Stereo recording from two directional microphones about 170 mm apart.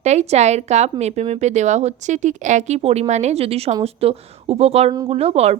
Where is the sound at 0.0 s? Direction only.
40° right (ahead or behind).